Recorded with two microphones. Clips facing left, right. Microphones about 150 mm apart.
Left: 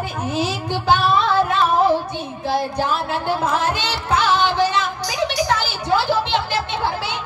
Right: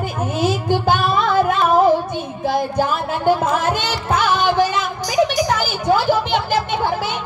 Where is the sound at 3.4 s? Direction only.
50° right (ahead or behind).